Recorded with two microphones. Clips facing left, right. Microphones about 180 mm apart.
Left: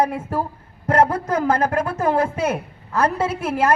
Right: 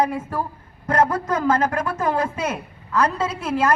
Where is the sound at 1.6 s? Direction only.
55° left (ahead or behind).